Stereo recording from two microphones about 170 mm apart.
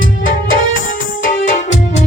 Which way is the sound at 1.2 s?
45° left (ahead or behind).